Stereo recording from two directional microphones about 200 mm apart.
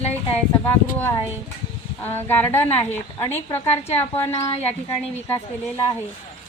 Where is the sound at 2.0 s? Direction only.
10° left (ahead or behind).